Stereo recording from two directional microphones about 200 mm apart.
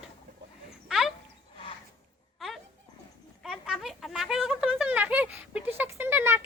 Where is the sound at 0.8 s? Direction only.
Centre (ahead or behind).